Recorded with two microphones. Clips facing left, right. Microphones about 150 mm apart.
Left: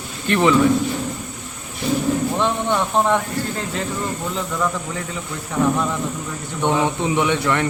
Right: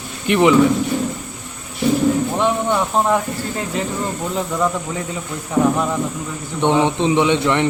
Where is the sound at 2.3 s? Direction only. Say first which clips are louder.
Right 2 dB; 10° right (ahead or behind).